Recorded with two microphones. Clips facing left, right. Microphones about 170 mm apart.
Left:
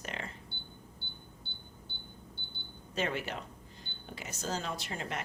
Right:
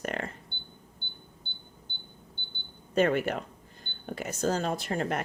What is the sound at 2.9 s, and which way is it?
Speech, 50° right (ahead or behind).